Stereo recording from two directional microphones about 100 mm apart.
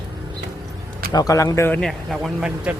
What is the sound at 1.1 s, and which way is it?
Speech, 35° left (ahead or behind).